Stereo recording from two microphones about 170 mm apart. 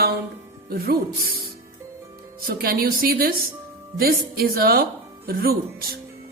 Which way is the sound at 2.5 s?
60° right (ahead or behind).